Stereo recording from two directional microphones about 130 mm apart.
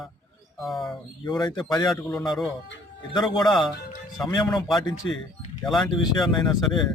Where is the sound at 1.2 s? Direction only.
35° left (ahead or behind).